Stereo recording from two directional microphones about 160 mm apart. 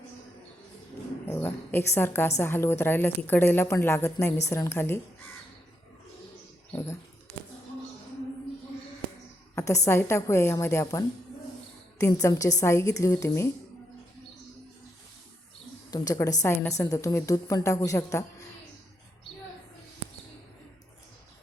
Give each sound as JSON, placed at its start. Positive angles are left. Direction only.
{"t": 1.3, "sound": "a woman's voice", "side_deg": 15}
{"t": 6.7, "sound": "a sound", "side_deg": 15}
{"t": 9.6, "sound": "a woman's voice", "side_deg": 20}
{"t": 15.9, "sound": "a woman's voice", "side_deg": 25}